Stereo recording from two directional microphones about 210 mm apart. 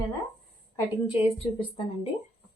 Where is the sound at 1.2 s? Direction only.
25° left (ahead or behind).